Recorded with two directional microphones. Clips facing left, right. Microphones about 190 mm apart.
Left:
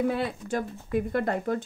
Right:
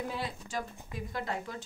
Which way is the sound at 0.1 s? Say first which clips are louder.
Left 8 dB; 60° left (ahead or behind).